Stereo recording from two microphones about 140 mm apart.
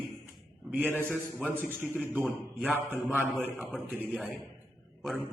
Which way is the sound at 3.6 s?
Centre (ahead or behind).